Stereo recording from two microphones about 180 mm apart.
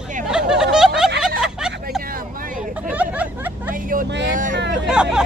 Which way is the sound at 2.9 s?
10° right (ahead or behind).